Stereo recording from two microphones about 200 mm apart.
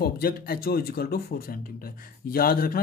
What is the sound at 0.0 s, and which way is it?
Speech, 50° left (ahead or behind).